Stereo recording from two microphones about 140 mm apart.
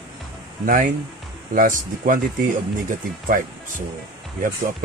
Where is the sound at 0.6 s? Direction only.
75° right (ahead or behind).